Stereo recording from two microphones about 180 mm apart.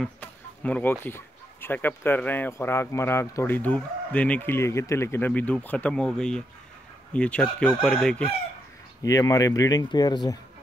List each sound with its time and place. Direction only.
0.0 s speech: 10° left (ahead or behind)
9.0 s speech: 20° left (ahead or behind)